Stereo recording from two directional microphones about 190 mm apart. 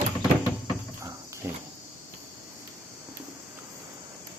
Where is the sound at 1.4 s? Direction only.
15° right (ahead or behind).